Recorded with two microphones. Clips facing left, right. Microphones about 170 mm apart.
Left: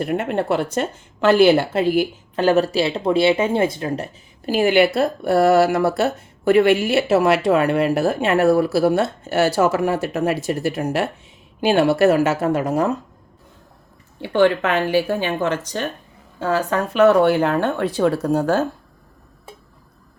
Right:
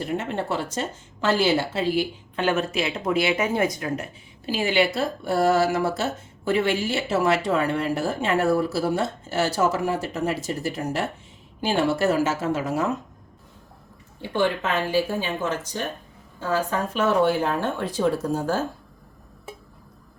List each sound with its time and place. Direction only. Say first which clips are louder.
0.0 s a woman's voice: left 6 dB; 60° left (ahead or behind); by 4.1 s 30° left (ahead or behind)
4.4 s speech: left 7 dB; 55° left (ahead or behind)
14.2 s speech: left 7 dB; 70° left (ahead or behind)